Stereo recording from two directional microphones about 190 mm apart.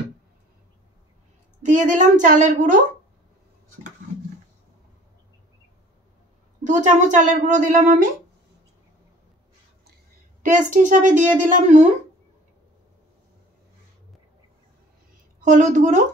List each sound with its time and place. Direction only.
1.6 s speech: 40° right (ahead or behind)
6.6 s speech: 40° right (ahead or behind)
10.4 s speech: 40° right (ahead or behind)
15.4 s speech: 40° right (ahead or behind)